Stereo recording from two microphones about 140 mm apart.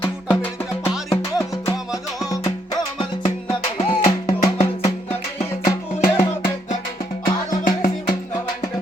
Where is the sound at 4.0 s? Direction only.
55° left (ahead or behind).